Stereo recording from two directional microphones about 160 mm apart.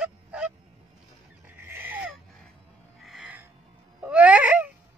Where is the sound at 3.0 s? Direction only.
Centre (ahead or behind).